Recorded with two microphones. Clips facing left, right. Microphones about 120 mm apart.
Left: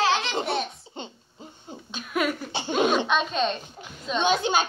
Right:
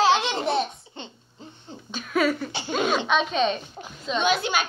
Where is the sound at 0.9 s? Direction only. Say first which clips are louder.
Left 2 dB; 10° left (ahead or behind).